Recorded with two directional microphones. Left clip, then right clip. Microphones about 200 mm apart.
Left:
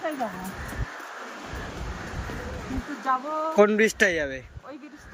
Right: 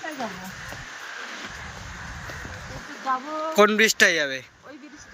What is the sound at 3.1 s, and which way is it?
Speech, 15° left (ahead or behind).